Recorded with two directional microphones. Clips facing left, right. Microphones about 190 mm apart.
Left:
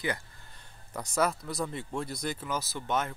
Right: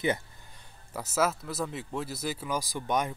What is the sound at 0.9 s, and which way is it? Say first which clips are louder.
Speech: right 1 dB; 5° right (ahead or behind).